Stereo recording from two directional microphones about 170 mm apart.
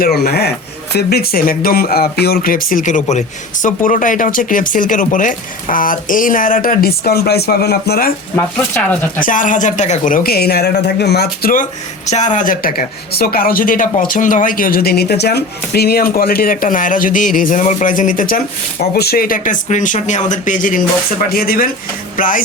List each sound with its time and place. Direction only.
0.0 s speech: 65° left (ahead or behind)
8.4 s speech: 10° left (ahead or behind)
9.2 s speech: 50° left (ahead or behind)